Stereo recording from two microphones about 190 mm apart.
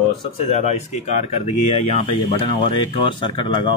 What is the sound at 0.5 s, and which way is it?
Speech, 35° left (ahead or behind).